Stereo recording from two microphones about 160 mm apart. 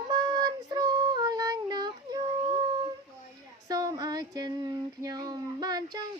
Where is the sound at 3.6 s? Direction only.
25° right (ahead or behind).